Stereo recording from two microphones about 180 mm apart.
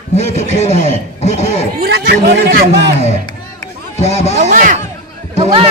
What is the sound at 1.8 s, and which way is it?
Speech, 65° right (ahead or behind).